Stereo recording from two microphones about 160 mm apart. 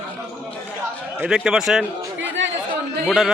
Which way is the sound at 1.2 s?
5° right (ahead or behind).